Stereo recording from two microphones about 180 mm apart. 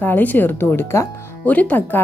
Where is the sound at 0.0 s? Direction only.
10° left (ahead or behind).